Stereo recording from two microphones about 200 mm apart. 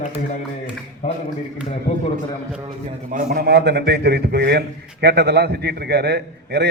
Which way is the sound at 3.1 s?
45° right (ahead or behind).